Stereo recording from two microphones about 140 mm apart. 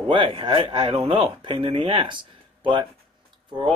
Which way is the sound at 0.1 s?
40° right (ahead or behind).